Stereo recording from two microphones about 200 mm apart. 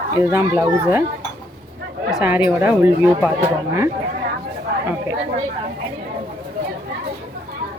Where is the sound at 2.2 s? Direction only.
10° right (ahead or behind).